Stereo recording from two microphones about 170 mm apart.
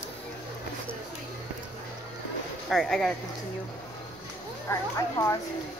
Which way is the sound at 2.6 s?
Centre (ahead or behind).